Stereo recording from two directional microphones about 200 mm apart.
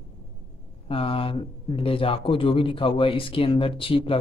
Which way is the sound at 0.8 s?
25° left (ahead or behind).